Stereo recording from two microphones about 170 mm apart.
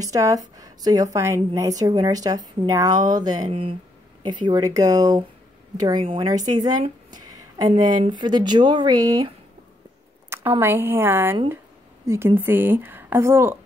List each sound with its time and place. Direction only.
0.0 s a woman's voice: 20° right (ahead or behind)
7.1 s a sound: 25° right (ahead or behind)
8.1 s a woman's voice: 25° right (ahead or behind)
10.6 s a woman's voice: 15° right (ahead or behind)